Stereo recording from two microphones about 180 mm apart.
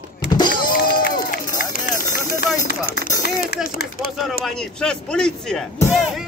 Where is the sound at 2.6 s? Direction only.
65° left (ahead or behind).